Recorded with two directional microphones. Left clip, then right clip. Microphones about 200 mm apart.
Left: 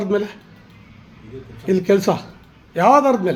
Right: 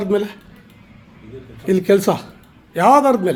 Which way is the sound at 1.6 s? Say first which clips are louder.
Right 2 dB; 10° right (ahead or behind).